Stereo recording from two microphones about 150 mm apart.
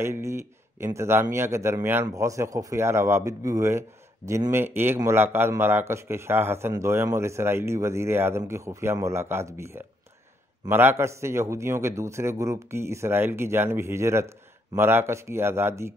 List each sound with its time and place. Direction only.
0.0 s a man's voice: 20° right (ahead or behind)